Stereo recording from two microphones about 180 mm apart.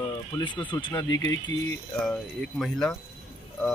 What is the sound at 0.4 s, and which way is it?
Speech, 25° left (ahead or behind).